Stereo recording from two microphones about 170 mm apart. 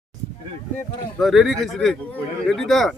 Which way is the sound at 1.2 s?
Centre (ahead or behind).